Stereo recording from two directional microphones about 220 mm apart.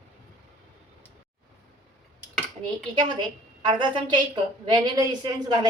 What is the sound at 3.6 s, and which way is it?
A woman's voice, 20° right (ahead or behind).